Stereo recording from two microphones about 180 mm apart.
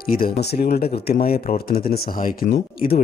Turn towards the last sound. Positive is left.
turn(degrees=55)  # may be behind; listen again after turning